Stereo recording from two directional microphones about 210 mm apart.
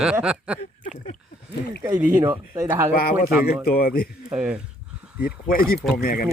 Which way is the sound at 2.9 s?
45° left (ahead or behind).